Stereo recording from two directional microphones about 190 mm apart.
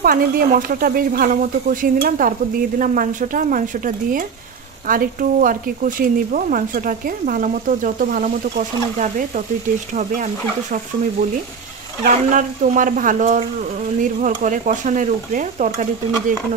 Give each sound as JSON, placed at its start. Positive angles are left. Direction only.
{"t": 0.0, "sound": "speech", "side_deg": -50}
{"t": 12.0, "sound": "speech", "side_deg": -40}